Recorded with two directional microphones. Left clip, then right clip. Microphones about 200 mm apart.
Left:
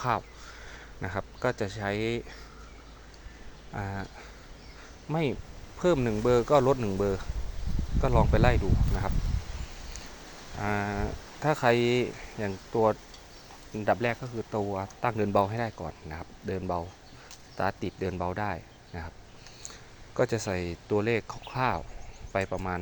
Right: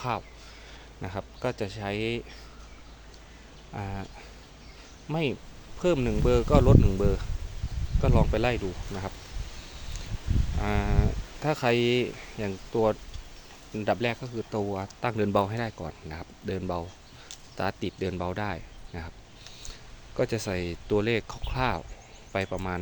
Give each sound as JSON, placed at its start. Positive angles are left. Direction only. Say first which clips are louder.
{"t": 0.0, "sound": "speech", "louder": "left 3 dB", "side_deg": 5}
{"t": 3.7, "sound": "speech", "louder": "left 1 dB", "side_deg": -10}
{"t": 5.0, "sound": "speech", "louder": "even", "side_deg": -5}
{"t": 10.6, "sound": "speech", "louder": "even", "side_deg": -20}
{"t": 20.1, "sound": "speech", "louder": "left 1 dB", "side_deg": -10}